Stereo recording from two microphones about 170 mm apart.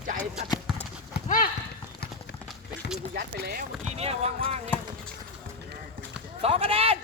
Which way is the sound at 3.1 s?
70° right (ahead or behind).